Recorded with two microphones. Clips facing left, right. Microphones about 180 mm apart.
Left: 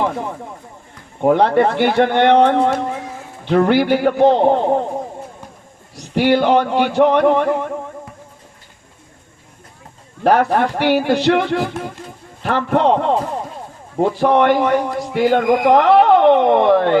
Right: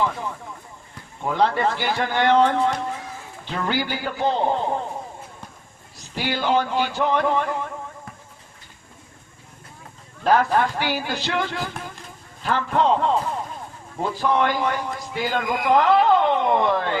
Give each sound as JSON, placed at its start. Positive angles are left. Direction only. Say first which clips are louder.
{"t": 1.2, "sound": "a man's voice", "louder": "left 8 dB", "side_deg": 60}
{"t": 6.0, "sound": "speech", "louder": "left 12 dB", "side_deg": 65}
{"t": 10.2, "sound": "a man's voice", "louder": "left 5 dB", "side_deg": 65}